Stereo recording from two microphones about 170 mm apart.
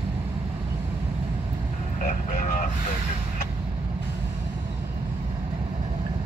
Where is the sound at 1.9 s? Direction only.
50° left (ahead or behind).